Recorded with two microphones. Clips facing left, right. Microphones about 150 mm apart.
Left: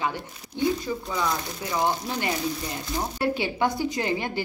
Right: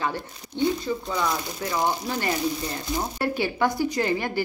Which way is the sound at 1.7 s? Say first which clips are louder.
Even; 15° left (ahead or behind).